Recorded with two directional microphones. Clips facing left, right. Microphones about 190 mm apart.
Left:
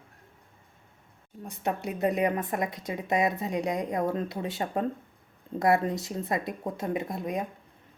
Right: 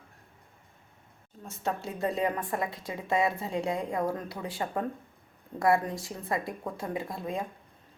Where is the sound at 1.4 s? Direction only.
15° left (ahead or behind).